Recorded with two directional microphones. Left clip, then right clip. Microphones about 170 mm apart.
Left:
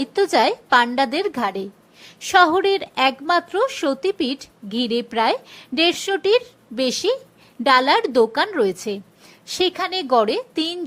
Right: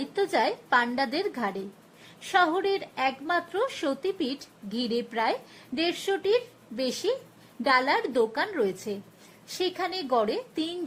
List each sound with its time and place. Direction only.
0.0 s a woman's voice: 25° left (ahead or behind)